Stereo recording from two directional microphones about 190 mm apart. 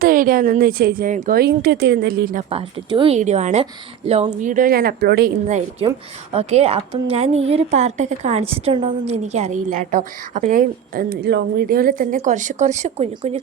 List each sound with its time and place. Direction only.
0.0 s a woman's voice: 45° right (ahead or behind)
2.5 s speech: 30° right (ahead or behind)
3.2 s a woman's voice: 40° right (ahead or behind); by 5.3 s 55° right (ahead or behind)
5.8 s a woman's voice: 30° right (ahead or behind)
9.0 s a woman's voice: 35° right (ahead or behind)